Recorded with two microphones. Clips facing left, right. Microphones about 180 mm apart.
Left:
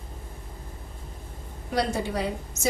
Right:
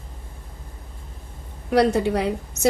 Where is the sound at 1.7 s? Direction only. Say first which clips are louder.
Right 9 dB; 65° right (ahead or behind).